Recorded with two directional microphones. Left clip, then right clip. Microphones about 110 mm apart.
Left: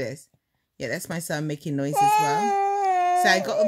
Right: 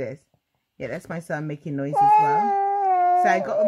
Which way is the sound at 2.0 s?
45° left (ahead or behind).